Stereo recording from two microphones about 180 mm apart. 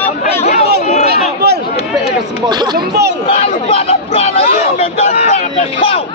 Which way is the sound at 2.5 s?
25° right (ahead or behind).